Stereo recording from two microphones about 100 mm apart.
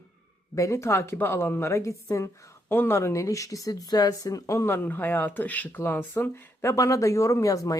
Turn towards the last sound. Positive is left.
turn(degrees=35)  # may be behind; listen again after turning